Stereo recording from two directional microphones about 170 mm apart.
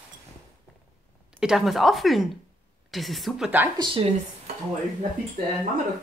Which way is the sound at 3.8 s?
30° right (ahead or behind).